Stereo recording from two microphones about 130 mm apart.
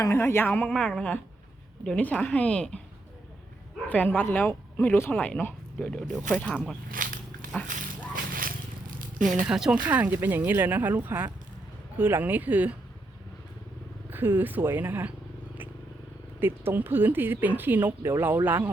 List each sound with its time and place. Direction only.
0.0 s speech: 20° left (ahead or behind)
3.8 s speech: 15° left (ahead or behind)
6.9 s a sound: 90° right
9.2 s speech: 5° right (ahead or behind)
14.1 s speech: 15° right (ahead or behind)
16.4 s speech: 15° right (ahead or behind)